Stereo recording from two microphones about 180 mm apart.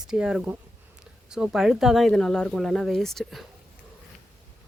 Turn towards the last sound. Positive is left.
turn(degrees=0)  # may be behind; listen again after turning